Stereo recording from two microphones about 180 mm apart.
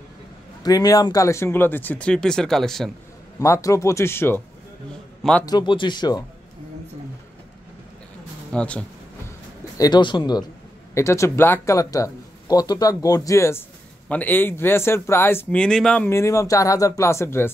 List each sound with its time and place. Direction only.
0.7 s speech: 20° left (ahead or behind); by 2.9 s centre (ahead or behind)
3.3 s speech: 15° left (ahead or behind)
5.4 s speech: 25° left (ahead or behind)
8.5 s speech: 5° left (ahead or behind)
9.8 s speech: 25° left (ahead or behind)